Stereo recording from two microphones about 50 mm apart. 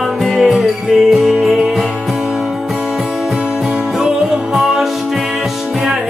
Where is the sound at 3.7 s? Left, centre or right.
Centre.